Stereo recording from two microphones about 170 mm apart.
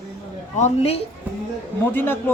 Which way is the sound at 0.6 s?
35° left (ahead or behind).